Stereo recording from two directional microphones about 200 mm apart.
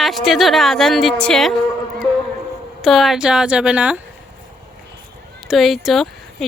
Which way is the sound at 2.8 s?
Centre (ahead or behind).